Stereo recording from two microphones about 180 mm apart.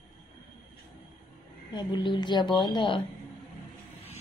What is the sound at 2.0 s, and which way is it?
Speech, 25° left (ahead or behind).